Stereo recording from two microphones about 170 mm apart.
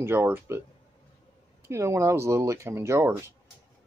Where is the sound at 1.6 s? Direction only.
15° right (ahead or behind).